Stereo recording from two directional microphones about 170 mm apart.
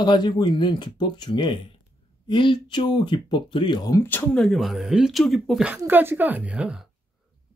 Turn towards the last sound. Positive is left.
turn(degrees=-5)  # may be behind; listen again after turning